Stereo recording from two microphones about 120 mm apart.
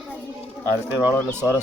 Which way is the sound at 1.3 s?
15° right (ahead or behind).